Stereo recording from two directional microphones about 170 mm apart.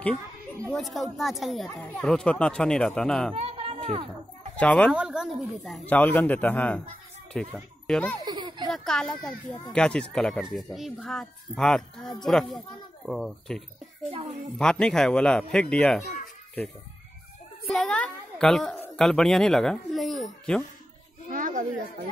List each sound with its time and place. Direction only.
0.7 s speech: centre (ahead or behind)
3.3 s a child's voice: 35° right (ahead or behind)
4.6 s speech: 10° left (ahead or behind)
4.9 s a child's voice: 5° right (ahead or behind)
8.3 s a sound: 25° right (ahead or behind)
8.6 s speech: centre (ahead or behind)
14.6 s speech: 5° left (ahead or behind)
17.6 s speech: 5° left (ahead or behind)
21.3 s children playing: 50° right (ahead or behind)